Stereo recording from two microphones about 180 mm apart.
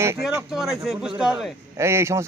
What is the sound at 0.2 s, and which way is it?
A man's voice, 5° right (ahead or behind).